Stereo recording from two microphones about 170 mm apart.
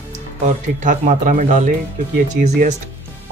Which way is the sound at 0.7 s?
50° right (ahead or behind).